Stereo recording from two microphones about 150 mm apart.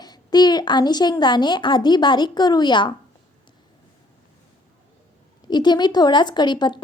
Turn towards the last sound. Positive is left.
turn(degrees=30)  # may be behind; listen again after turning